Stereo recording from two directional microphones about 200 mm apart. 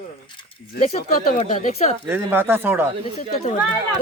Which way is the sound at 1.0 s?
50° left (ahead or behind).